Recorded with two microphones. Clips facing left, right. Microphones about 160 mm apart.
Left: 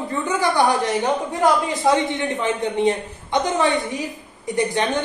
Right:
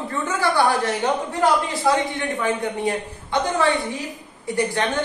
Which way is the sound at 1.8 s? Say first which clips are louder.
Left 2 dB; 20° left (ahead or behind).